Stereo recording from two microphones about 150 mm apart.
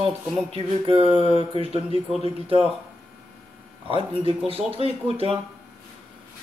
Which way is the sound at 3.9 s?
35° right (ahead or behind).